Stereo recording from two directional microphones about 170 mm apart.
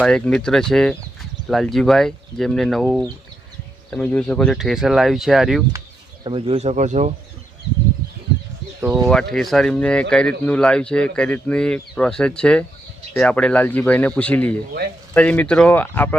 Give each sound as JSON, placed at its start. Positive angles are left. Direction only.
{"t": 0.0, "sound": "speech", "side_deg": 5}
{"t": 6.2, "sound": "speech", "side_deg": -30}
{"t": 9.3, "sound": "speech", "side_deg": 0}